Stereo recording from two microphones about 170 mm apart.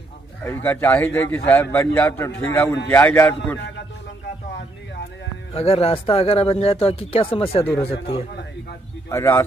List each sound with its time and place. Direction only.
0.4 s a man's voice: 10° left (ahead or behind)
5.5 s speech: 35° left (ahead or behind)
9.1 s a man's voice: 15° left (ahead or behind)